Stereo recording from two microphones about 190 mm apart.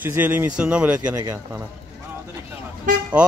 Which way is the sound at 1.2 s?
15° right (ahead or behind).